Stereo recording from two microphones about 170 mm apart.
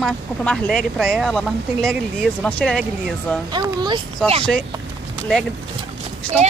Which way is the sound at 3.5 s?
25° right (ahead or behind).